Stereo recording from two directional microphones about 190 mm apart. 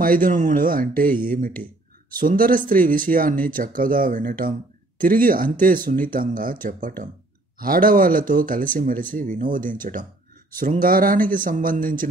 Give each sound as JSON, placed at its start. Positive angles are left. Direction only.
{"t": 0.0, "sound": "speech", "side_deg": -45}